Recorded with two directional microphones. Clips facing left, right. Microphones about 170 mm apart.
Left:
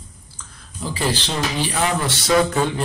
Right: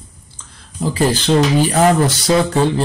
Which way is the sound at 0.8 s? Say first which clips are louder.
Right 7 dB; 45° right (ahead or behind).